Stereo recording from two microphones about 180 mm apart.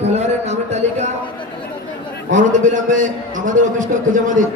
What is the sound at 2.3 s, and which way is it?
A man's voice, 45° right (ahead or behind).